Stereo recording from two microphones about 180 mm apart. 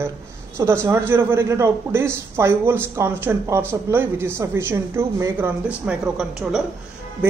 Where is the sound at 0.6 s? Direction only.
15° right (ahead or behind).